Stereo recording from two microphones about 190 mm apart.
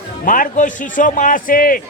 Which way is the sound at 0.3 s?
45° left (ahead or behind).